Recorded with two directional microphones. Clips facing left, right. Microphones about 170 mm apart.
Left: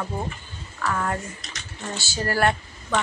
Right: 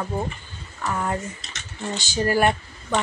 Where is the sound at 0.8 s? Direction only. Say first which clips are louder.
Even; 20° right (ahead or behind).